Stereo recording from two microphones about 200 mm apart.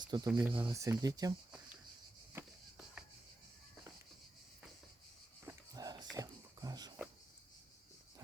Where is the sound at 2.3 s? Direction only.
5° right (ahead or behind).